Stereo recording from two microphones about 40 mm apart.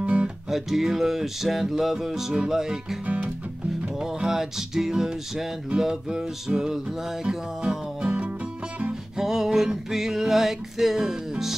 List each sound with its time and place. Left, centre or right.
0.0 s music: right
0.5 s music: centre
4.0 s music: centre
9.1 s music: centre